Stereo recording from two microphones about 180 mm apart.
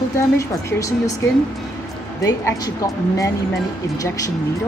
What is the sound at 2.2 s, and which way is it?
Speech, 20° left (ahead or behind).